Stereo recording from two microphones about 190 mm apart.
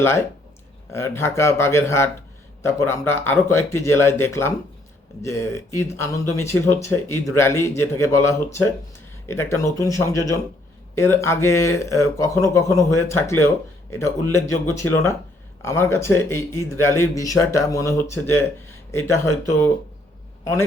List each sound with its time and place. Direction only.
0.0 s a man's voice: 10° left (ahead or behind)